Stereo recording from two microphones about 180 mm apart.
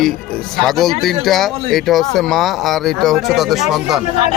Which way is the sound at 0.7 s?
Centre (ahead or behind).